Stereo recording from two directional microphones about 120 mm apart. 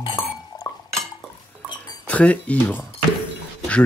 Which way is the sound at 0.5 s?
35° left (ahead or behind).